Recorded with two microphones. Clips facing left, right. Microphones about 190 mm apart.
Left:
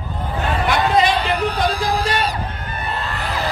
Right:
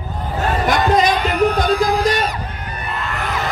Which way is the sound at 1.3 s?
30° left (ahead or behind).